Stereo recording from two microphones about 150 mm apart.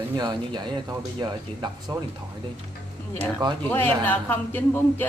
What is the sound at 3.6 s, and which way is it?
A woman's voice, 15° left (ahead or behind).